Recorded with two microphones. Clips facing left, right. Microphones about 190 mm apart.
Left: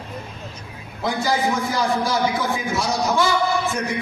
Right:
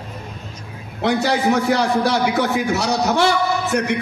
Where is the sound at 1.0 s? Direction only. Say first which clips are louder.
Right 4 dB; 70° right (ahead or behind).